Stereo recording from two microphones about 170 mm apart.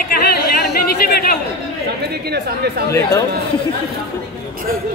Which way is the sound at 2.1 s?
70° right (ahead or behind).